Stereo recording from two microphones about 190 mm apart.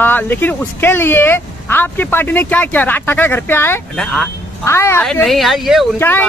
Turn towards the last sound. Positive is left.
turn(degrees=10)  # may be behind; listen again after turning